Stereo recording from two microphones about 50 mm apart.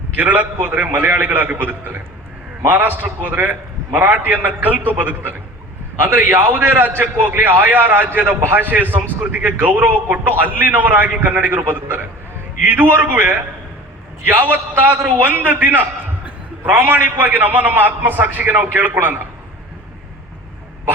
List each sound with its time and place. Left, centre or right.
0.2 s a man's voice: right